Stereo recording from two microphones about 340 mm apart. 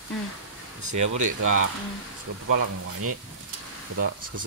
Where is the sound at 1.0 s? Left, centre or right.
Right.